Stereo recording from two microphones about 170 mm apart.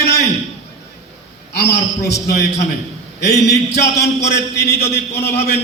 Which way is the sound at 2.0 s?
20° left (ahead or behind).